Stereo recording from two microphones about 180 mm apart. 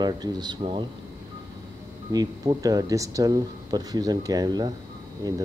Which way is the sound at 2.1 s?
20° right (ahead or behind).